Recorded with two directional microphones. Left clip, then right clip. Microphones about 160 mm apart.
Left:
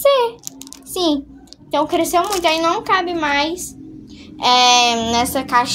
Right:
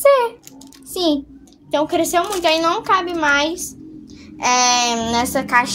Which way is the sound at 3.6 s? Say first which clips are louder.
Right 1 dB; 20° left (ahead or behind).